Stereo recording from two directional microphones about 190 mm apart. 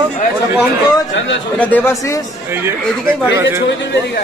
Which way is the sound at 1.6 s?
10° left (ahead or behind).